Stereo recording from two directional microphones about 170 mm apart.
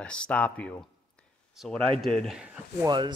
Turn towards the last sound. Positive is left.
turn(degrees=-25)  # may be behind; listen again after turning